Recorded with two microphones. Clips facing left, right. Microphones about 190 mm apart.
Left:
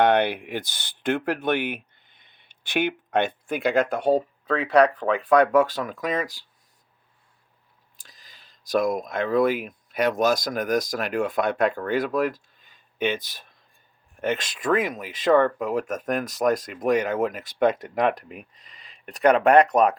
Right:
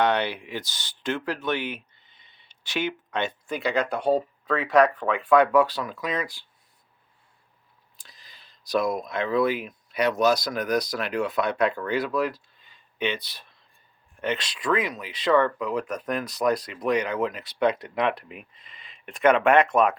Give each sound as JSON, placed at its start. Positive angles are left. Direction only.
{"t": 0.0, "sound": "speech", "side_deg": 55}
{"t": 7.9, "sound": "speech", "side_deg": 45}